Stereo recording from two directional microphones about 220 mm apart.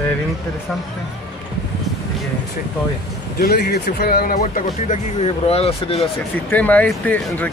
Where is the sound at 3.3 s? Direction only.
45° left (ahead or behind); by 6.0 s 25° left (ahead or behind).